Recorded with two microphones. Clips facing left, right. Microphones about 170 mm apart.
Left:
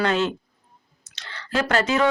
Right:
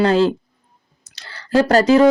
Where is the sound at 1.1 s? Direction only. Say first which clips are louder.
Right 9 dB; 35° right (ahead or behind).